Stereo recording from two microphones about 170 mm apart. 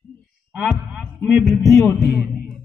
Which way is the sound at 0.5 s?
5° right (ahead or behind).